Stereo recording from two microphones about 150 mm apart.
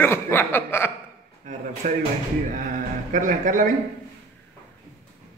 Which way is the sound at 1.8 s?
55° right (ahead or behind).